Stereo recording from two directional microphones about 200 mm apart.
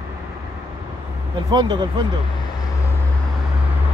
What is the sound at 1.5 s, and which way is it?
Speech, 20° right (ahead or behind).